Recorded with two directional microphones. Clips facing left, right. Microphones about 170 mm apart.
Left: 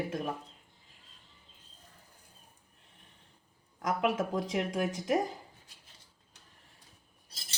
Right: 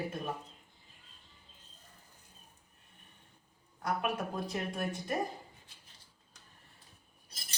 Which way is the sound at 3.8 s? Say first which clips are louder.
Left 4 dB; 90° left.